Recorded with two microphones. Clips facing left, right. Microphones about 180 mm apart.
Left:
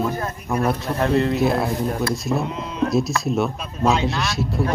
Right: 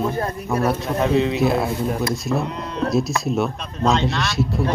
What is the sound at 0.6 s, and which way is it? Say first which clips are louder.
Speech: right 1 dB; centre (ahead or behind).